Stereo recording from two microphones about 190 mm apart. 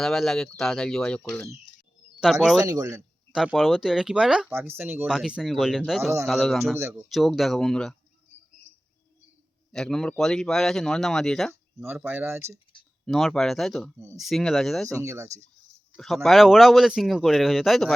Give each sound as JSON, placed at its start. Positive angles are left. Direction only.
{"t": 0.0, "sound": "speech", "side_deg": 0}
{"t": 2.6, "sound": "speech", "side_deg": -20}
{"t": 3.3, "sound": "speech", "side_deg": 0}
{"t": 9.7, "sound": "speech", "side_deg": 5}
{"t": 11.8, "sound": "speech", "side_deg": -10}
{"t": 13.1, "sound": "speech", "side_deg": 0}
{"t": 15.0, "sound": "speech", "side_deg": -15}
{"t": 16.0, "sound": "speech", "side_deg": 0}